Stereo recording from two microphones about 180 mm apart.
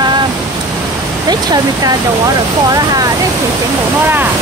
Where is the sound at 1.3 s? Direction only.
20° right (ahead or behind).